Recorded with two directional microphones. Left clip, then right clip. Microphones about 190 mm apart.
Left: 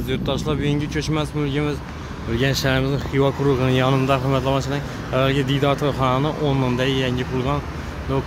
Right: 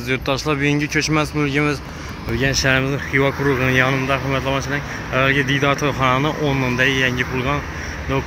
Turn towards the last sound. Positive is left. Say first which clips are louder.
# right 3 dB
turn(degrees=10)  # may be behind; listen again after turning